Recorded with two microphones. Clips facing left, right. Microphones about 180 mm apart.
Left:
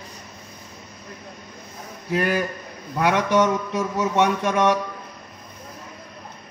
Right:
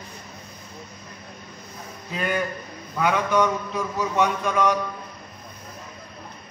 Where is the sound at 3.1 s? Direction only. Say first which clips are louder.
Left 3 dB; 75° left (ahead or behind).